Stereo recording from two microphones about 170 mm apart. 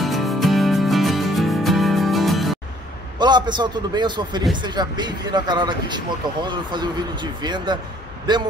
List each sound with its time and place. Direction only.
0.0 s music: centre (ahead or behind)
3.2 s speech: 25° right (ahead or behind)